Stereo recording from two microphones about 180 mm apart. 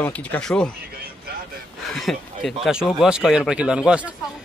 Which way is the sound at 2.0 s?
Centre (ahead or behind).